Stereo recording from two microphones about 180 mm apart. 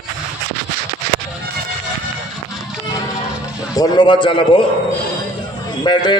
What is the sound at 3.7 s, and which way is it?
Speech, 20° left (ahead or behind).